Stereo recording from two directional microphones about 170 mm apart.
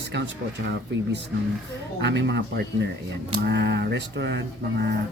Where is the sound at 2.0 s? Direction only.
90° right.